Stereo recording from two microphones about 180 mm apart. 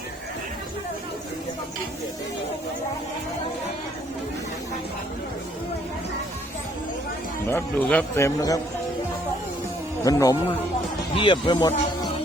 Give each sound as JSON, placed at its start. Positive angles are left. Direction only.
{"t": 7.4, "sound": "a man's voice", "side_deg": 10}
{"t": 10.0, "sound": "speech", "side_deg": 20}